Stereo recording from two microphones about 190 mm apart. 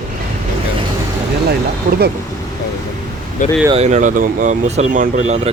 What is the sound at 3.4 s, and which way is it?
Speech, 45° left (ahead or behind).